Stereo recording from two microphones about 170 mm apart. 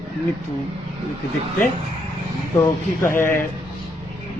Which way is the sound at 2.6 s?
15° left (ahead or behind).